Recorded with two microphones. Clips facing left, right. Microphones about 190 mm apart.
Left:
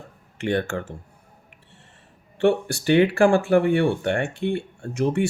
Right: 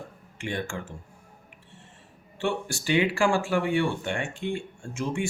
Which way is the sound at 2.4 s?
60° left (ahead or behind).